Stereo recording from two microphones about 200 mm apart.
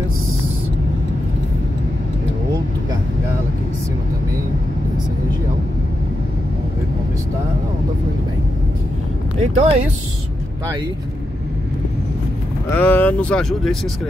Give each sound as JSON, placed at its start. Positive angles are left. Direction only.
{"t": 9.4, "sound": "speech", "side_deg": -35}
{"t": 12.6, "sound": "speech", "side_deg": 10}